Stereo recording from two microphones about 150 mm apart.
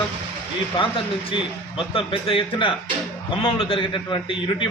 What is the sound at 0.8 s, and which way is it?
A man's voice, 35° left (ahead or behind).